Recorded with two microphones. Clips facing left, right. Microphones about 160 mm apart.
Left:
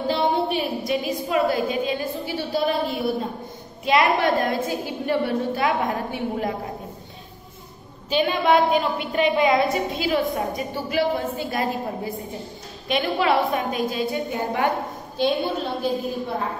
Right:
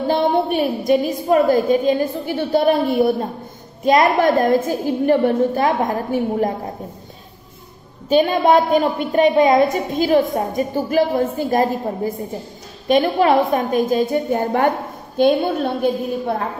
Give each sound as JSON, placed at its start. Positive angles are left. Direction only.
{"t": 0.1, "sound": "a woman's voice", "side_deg": -50}
{"t": 8.1, "sound": "a woman's voice", "side_deg": -45}